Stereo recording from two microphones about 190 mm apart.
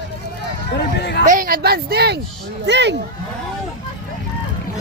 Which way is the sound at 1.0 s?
65° left (ahead or behind).